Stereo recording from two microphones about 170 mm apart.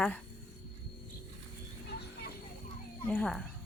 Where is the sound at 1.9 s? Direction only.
70° left (ahead or behind).